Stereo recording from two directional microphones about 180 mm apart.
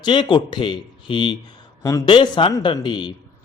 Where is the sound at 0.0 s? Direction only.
25° left (ahead or behind).